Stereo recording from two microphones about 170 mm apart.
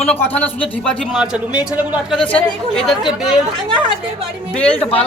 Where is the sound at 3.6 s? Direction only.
30° right (ahead or behind).